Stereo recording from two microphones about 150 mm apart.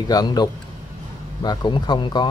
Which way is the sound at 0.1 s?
25° left (ahead or behind).